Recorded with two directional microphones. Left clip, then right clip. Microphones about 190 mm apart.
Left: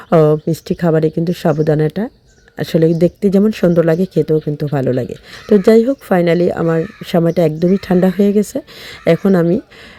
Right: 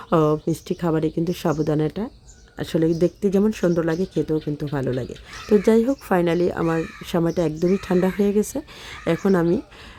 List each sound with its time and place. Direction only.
0.1 s speech: 20° left (ahead or behind)